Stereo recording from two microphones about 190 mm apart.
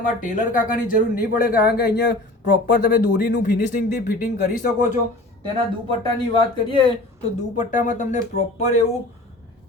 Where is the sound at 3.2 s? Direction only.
60° left (ahead or behind).